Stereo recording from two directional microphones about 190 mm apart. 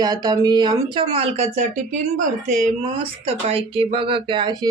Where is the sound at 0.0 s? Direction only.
20° right (ahead or behind).